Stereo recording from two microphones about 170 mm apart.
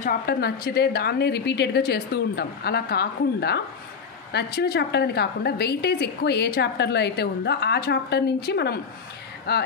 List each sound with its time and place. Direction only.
0.0 s a woman's voice: 60° left (ahead or behind)